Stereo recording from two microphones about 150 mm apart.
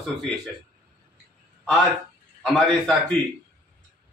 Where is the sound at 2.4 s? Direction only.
Centre (ahead or behind).